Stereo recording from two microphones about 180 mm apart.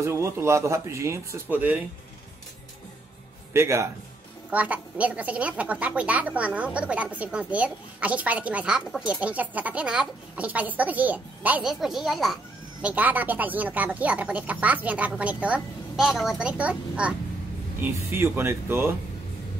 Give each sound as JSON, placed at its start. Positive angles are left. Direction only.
{"t": 0.0, "sound": "a woman's voice", "side_deg": -15}
{"t": 3.5, "sound": "a woman's voice", "side_deg": -15}